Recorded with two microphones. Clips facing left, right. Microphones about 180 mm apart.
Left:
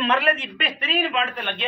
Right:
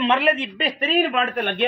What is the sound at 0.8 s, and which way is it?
Speech, 45° right (ahead or behind).